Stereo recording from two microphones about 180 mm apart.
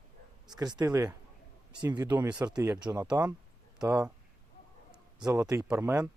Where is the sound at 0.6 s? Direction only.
20° right (ahead or behind).